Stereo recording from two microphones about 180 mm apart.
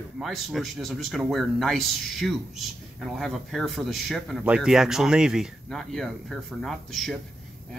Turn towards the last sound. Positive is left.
turn(degrees=0)  # may be behind; listen again after turning